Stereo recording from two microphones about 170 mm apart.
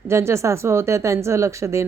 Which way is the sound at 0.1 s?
15° right (ahead or behind).